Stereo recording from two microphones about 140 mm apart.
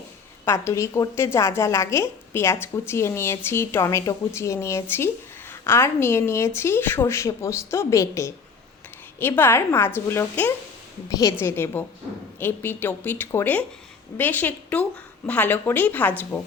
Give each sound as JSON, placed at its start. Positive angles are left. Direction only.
{"t": 0.4, "sound": "a woman's voice", "side_deg": 20}